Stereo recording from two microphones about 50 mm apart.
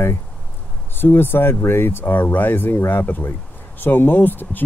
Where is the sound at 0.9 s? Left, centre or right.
Left.